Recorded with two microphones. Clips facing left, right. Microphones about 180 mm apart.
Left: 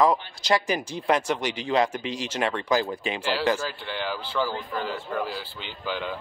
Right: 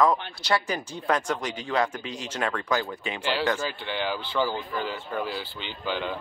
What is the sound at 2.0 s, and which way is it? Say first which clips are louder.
Speech: left 4 dB; 90° left.